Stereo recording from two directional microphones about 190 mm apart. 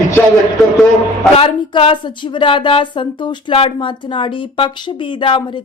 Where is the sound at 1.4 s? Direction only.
30° left (ahead or behind).